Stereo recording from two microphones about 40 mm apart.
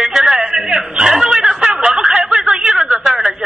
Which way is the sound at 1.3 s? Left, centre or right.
Centre.